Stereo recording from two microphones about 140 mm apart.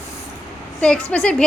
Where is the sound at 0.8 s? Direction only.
10° left (ahead or behind).